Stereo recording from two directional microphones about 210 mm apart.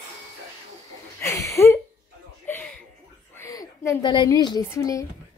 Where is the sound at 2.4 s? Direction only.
10° left (ahead or behind).